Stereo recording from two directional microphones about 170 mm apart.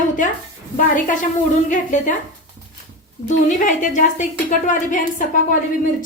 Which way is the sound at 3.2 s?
45° left (ahead or behind).